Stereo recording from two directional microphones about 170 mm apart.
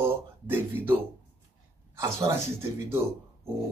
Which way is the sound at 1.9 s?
15° right (ahead or behind).